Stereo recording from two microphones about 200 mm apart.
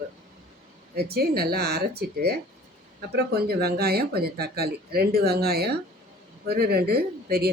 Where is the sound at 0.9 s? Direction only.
50° right (ahead or behind).